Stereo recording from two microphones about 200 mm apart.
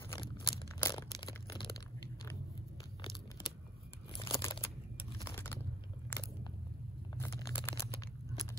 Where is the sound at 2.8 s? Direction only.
20° left (ahead or behind).